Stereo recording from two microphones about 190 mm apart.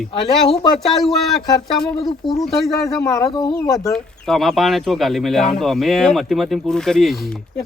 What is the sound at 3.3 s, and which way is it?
Speech, 20° left (ahead or behind).